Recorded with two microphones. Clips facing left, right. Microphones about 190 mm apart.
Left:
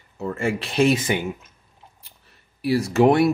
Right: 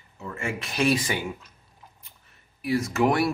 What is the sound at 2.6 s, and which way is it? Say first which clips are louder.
Speech: left 6 dB; 35° left (ahead or behind).